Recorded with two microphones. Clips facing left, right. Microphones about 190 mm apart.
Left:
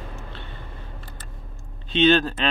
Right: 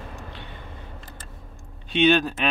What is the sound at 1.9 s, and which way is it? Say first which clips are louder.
Speech: left 1 dB; 10° right (ahead or behind).